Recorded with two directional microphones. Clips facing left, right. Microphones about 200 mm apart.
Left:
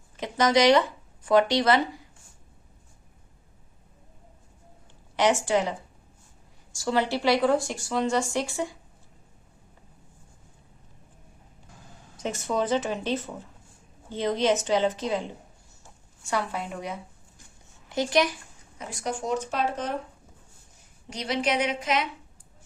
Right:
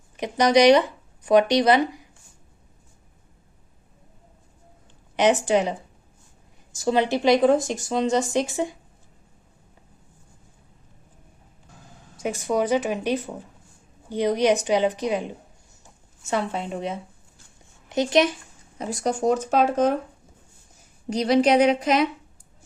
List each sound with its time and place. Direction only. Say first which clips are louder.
0.2 s speech: right 4 dB; 20° right (ahead or behind)
5.1 s speech: right 4 dB; 20° right (ahead or behind)
6.7 s speech: right 4 dB; 20° right (ahead or behind)
12.2 s speech: right 4 dB; 10° right (ahead or behind)
18.8 s a woman's voice: right 8 dB; 40° right (ahead or behind)
21.1 s a woman's voice: right 9 dB; 40° right (ahead or behind)